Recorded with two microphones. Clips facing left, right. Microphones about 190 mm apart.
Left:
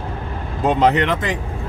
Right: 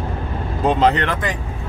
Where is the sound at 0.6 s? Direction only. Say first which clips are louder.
Left 1 dB; 15° left (ahead or behind).